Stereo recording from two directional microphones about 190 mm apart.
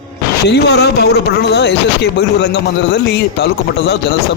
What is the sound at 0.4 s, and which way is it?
Speech, 60° left (ahead or behind).